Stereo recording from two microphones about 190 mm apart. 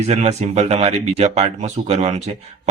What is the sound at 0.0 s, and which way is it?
Speech, 35° right (ahead or behind).